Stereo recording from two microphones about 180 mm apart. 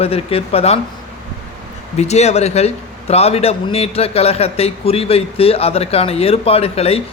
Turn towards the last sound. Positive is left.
turn(degrees=35)  # may be behind; listen again after turning